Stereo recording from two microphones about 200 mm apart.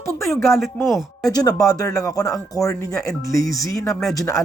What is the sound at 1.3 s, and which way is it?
Speech, 20° left (ahead or behind).